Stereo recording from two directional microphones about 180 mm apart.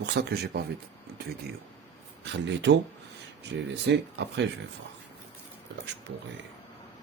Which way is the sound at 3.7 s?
70° right (ahead or behind).